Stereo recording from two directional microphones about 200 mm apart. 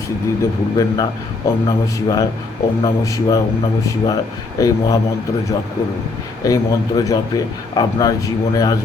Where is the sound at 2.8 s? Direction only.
15° left (ahead or behind).